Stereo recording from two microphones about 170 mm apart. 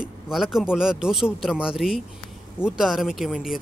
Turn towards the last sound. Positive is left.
turn(degrees=0)  # may be behind; listen again after turning